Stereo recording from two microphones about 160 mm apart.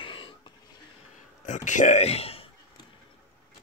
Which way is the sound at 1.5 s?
50° left (ahead or behind).